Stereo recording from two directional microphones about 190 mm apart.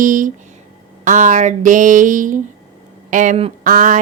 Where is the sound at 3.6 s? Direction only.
45° right (ahead or behind).